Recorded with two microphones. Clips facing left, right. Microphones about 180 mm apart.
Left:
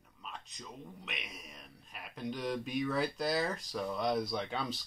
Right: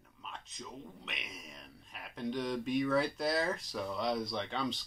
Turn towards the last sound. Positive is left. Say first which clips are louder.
# even
turn(degrees=5)  # may be behind; listen again after turning